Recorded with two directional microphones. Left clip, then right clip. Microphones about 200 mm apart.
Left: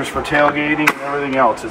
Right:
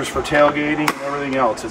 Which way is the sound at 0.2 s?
Centre (ahead or behind).